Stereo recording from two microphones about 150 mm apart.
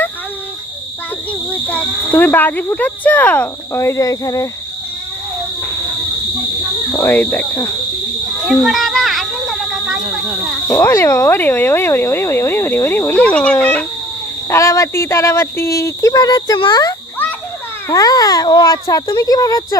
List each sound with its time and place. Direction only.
1.3 s speech: 10° left (ahead or behind)
7.0 s speech: 15° left (ahead or behind)
8.4 s a sound: centre (ahead or behind)
10.7 s speech: 20° left (ahead or behind)
14.5 s speech: 20° left (ahead or behind)